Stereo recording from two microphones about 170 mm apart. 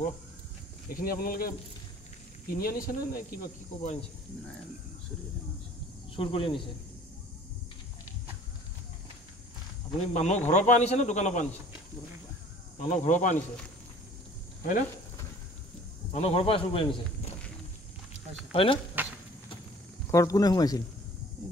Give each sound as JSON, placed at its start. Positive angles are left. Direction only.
{"t": 0.9, "sound": "speech", "side_deg": 60}
{"t": 6.1, "sound": "speech", "side_deg": 30}
{"t": 10.1, "sound": "speech", "side_deg": 45}
{"t": 12.8, "sound": "speech", "side_deg": 50}
{"t": 14.6, "sound": "speech", "side_deg": 55}
{"t": 16.1, "sound": "speech", "side_deg": 40}
{"t": 18.5, "sound": "speech", "side_deg": 30}
{"t": 19.0, "sound": "a sound", "side_deg": -10}
{"t": 20.1, "sound": "speech", "side_deg": 20}